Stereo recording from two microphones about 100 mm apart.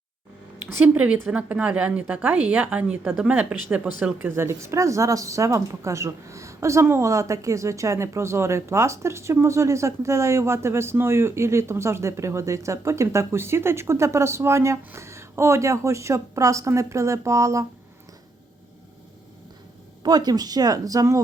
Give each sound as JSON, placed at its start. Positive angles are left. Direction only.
{"t": 0.6, "sound": "a woman's voice", "side_deg": -15}
{"t": 4.4, "sound": "speech", "side_deg": -30}
{"t": 20.0, "sound": "speech", "side_deg": -45}